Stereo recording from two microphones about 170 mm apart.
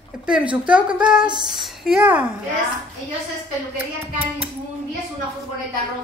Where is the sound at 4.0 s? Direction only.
10° right (ahead or behind).